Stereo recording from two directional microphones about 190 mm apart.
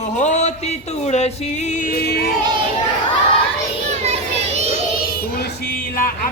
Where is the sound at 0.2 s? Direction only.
40° left (ahead or behind); by 2.2 s 55° left (ahead or behind).